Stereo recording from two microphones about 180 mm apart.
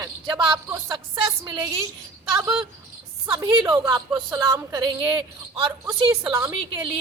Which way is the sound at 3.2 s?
25° right (ahead or behind).